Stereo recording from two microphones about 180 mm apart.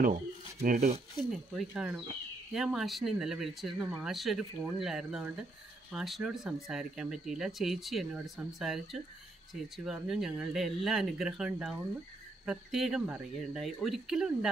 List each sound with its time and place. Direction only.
0.6 s speech: 40° right (ahead or behind)
1.3 s speech: 5° right (ahead or behind)